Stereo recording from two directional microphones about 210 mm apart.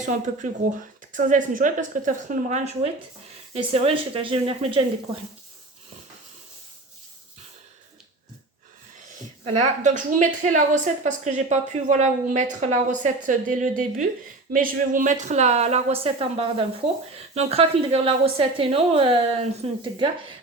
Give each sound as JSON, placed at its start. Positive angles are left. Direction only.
{"t": 0.1, "sound": "a woman's voice", "side_deg": -35}
{"t": 9.4, "sound": "a woman's voice", "side_deg": -35}